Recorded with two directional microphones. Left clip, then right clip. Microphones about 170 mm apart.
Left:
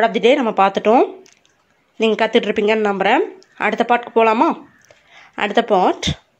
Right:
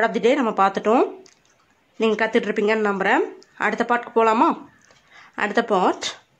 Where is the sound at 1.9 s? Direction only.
15° left (ahead or behind).